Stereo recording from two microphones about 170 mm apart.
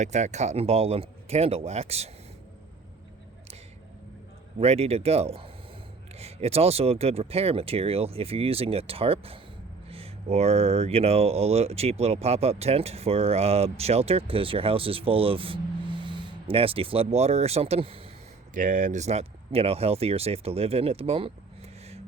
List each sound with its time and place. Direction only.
0.0 s speech: 45° right (ahead or behind)
4.6 s speech: 35° right (ahead or behind)
18.5 s speech: 50° right (ahead or behind); by 21.3 s 35° right (ahead or behind)